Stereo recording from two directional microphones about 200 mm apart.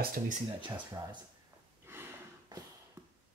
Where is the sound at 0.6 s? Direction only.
25° right (ahead or behind).